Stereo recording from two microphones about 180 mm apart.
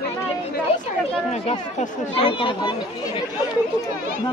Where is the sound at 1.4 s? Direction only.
30° left (ahead or behind).